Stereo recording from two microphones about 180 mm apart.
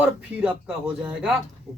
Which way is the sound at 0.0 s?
5° right (ahead or behind).